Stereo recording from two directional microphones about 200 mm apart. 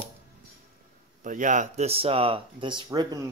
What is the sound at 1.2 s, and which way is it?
Speech, 40° right (ahead or behind).